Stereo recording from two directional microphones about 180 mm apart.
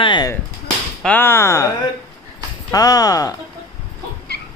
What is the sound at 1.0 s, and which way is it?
Speech, 10° left (ahead or behind).